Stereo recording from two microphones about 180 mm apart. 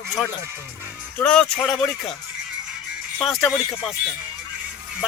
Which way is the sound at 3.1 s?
Centre (ahead or behind).